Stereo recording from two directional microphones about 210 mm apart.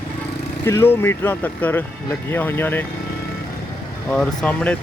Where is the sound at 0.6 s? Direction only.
10° left (ahead or behind).